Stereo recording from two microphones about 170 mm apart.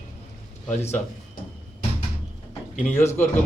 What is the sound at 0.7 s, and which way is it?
Speech, 45° left (ahead or behind).